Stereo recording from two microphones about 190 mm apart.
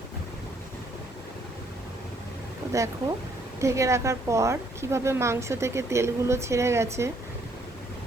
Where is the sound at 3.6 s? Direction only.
15° right (ahead or behind).